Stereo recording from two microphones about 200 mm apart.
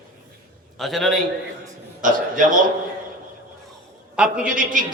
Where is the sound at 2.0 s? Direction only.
40° right (ahead or behind).